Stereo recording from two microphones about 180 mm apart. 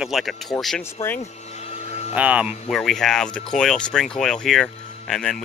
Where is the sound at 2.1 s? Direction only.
10° right (ahead or behind).